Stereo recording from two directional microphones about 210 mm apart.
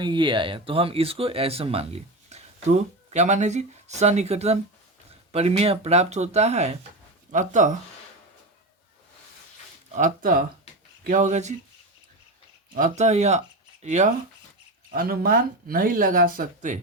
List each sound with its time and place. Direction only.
0.0 s speech: 20° right (ahead or behind)
9.9 s speech: 35° right (ahead or behind)
12.7 s speech: 35° right (ahead or behind)
14.9 s speech: 45° right (ahead or behind)